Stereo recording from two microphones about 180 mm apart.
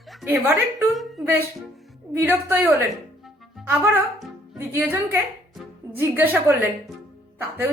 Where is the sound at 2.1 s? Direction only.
10° right (ahead or behind).